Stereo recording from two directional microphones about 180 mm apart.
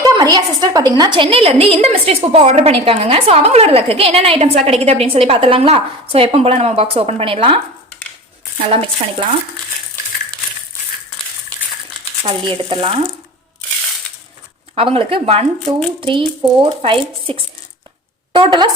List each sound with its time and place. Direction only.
0.0 s a woman's voice: 25° right (ahead or behind)
12.2 s a woman's voice: 30° right (ahead or behind)
14.8 s a woman's voice: 30° right (ahead or behind)
18.3 s speech: 25° right (ahead or behind)